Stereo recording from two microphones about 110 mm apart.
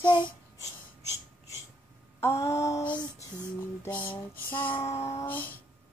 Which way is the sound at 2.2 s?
25° left (ahead or behind).